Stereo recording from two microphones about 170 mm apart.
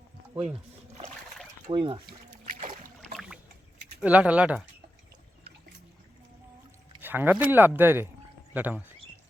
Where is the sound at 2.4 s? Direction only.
50° right (ahead or behind).